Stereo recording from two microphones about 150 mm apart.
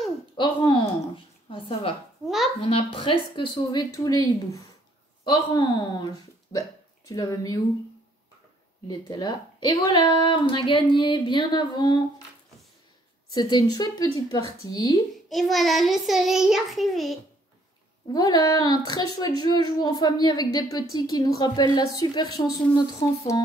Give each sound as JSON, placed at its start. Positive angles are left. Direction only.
{"t": 0.4, "sound": "a sound", "side_deg": 30}
{"t": 2.2, "sound": "a sound", "side_deg": 0}
{"t": 2.6, "sound": "a woman's voice", "side_deg": 35}
{"t": 8.8, "sound": "a woman's voice", "side_deg": 30}
{"t": 13.3, "sound": "a woman's voice", "side_deg": 30}
{"t": 15.2, "sound": "child singing", "side_deg": 0}
{"t": 18.1, "sound": "a woman's voice", "side_deg": 25}